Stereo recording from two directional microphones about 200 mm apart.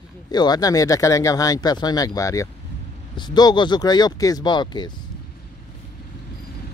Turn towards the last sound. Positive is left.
turn(degrees=20)  # may be behind; listen again after turning